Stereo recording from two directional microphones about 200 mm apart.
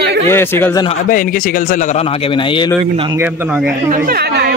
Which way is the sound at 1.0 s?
45° left (ahead or behind).